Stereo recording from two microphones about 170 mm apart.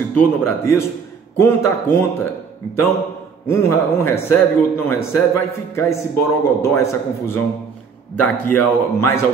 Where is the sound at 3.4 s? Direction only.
15° left (ahead or behind).